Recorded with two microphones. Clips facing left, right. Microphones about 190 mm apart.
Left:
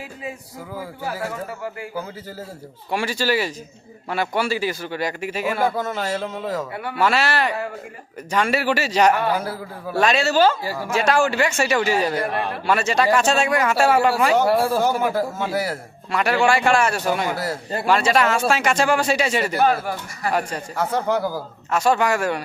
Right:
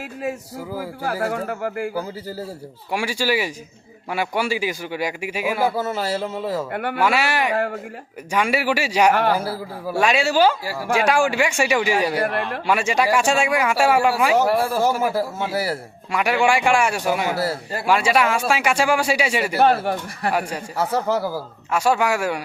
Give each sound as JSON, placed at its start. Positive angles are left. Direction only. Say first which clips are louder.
{"t": 0.0, "sound": "speech", "louder": "right 5 dB", "side_deg": -70}
{"t": 2.9, "sound": "a man's voice", "louder": "even", "side_deg": -10}
{"t": 6.7, "sound": "speech", "louder": "right 4 dB", "side_deg": -75}
{"t": 7.0, "sound": "a man's voice", "louder": "left 1 dB", "side_deg": -10}
{"t": 7.5, "sound": "speech", "louder": "right 5 dB", "side_deg": -65}
{"t": 8.3, "sound": "a man's voice", "louder": "even", "side_deg": -10}
{"t": 14.5, "sound": "speech", "louder": "left 2 dB", "side_deg": 15}
{"t": 14.8, "sound": "a man's voice", "louder": "even", "side_deg": -5}
{"t": 15.5, "sound": "speech", "louder": "right 1 dB", "side_deg": -35}
{"t": 16.1, "sound": "a man's voice", "louder": "even", "side_deg": -10}
{"t": 19.5, "sound": "speech", "louder": "right 3 dB", "side_deg": -30}
{"t": 20.3, "sound": "a man's voice", "louder": "left 2 dB", "side_deg": -10}